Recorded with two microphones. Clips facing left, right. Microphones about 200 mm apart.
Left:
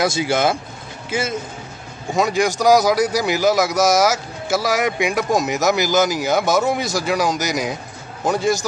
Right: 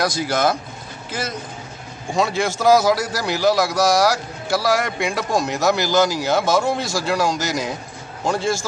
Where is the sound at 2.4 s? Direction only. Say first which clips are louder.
Even; 15° left (ahead or behind).